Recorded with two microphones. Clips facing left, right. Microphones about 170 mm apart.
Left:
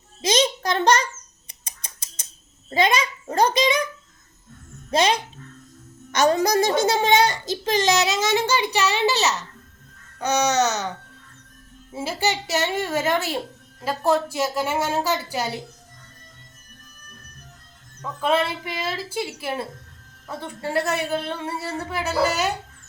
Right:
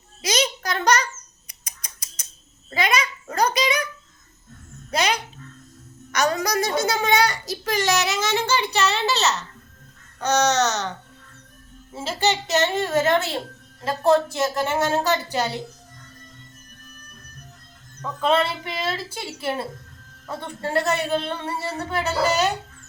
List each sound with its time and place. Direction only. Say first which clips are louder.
0.2 s a child's voice: left 3 dB; 25° left (ahead or behind)
1.5 s a sound: left 2 dB; 25° left (ahead or behind)
2.6 s a child's voice: left 3 dB; 25° left (ahead or behind)
4.9 s a child's voice: left 3 dB; 25° left (ahead or behind); by 15.4 s 10° left (ahead or behind)
18.2 s a woman's voice: right 1 dB; 5° left (ahead or behind)
20.2 s a woman's voice: right 1 dB; 5° left (ahead or behind)